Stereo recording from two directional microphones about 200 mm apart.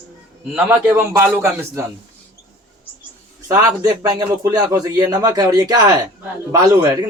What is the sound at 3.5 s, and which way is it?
A man's voice, 20° right (ahead or behind).